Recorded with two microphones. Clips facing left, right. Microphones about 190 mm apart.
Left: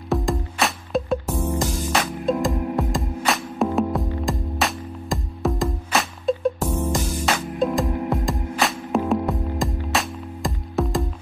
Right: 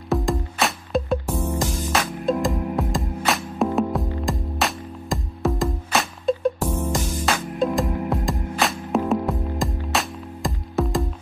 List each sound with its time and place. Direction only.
0.1 s music: centre (ahead or behind)
1.3 s music: 10° left (ahead or behind)
1.6 s music: centre (ahead or behind)